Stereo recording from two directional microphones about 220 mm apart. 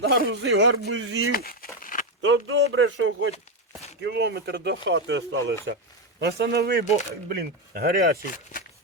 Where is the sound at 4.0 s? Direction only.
50° right (ahead or behind).